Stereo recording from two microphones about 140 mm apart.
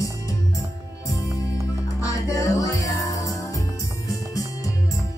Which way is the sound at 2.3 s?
25° left (ahead or behind).